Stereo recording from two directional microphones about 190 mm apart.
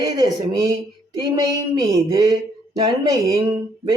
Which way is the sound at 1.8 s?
20° right (ahead or behind).